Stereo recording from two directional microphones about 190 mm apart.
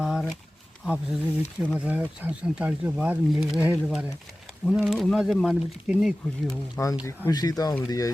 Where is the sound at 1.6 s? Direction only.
10° right (ahead or behind).